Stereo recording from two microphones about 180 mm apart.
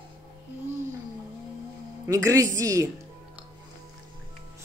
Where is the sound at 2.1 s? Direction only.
20° right (ahead or behind).